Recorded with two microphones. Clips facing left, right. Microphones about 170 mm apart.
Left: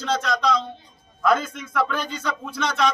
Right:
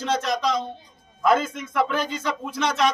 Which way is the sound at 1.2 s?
25° right (ahead or behind).